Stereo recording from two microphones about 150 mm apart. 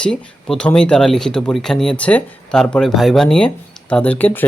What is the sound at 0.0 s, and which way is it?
Speech, 5° left (ahead or behind).